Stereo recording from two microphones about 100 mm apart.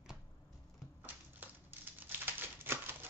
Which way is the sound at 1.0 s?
20° right (ahead or behind).